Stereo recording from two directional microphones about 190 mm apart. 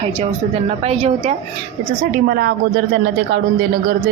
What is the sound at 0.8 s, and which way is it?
Speech, 30° right (ahead or behind).